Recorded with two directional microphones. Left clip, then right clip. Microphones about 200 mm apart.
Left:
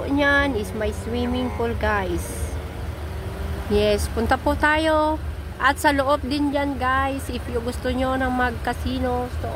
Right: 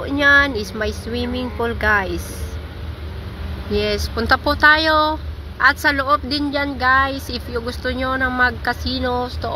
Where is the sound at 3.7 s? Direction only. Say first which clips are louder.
Left 1 dB; 25° left (ahead or behind); by 9.2 s 10° left (ahead or behind).